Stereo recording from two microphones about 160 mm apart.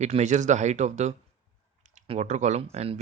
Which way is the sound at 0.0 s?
45° right (ahead or behind).